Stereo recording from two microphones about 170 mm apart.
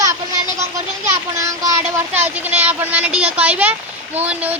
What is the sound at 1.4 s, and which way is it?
Speech, 15° right (ahead or behind).